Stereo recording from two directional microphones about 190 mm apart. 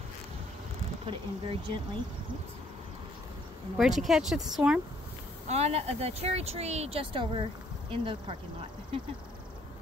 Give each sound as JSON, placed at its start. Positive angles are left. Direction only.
{"t": 1.0, "sound": "speech", "side_deg": -30}
{"t": 3.7, "sound": "speech", "side_deg": 0}
{"t": 5.5, "sound": "speech", "side_deg": -35}